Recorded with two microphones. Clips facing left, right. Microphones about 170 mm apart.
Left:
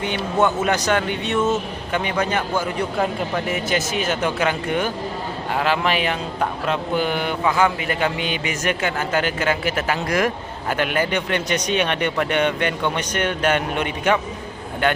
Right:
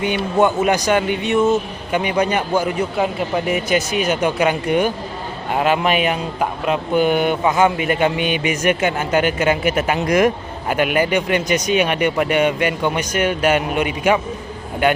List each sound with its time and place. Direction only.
0.0 s speech: 10° right (ahead or behind)